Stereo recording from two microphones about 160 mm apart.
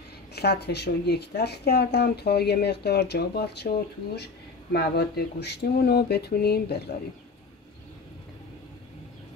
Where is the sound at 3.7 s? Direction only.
65° left (ahead or behind).